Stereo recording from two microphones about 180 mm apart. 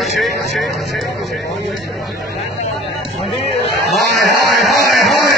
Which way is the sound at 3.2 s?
30° left (ahead or behind).